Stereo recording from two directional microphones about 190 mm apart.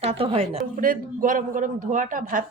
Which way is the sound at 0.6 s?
45° right (ahead or behind).